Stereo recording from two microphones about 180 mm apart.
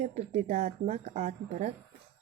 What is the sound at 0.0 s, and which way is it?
Speech, 35° right (ahead or behind).